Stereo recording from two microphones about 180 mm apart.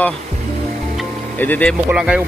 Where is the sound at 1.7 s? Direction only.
5° right (ahead or behind).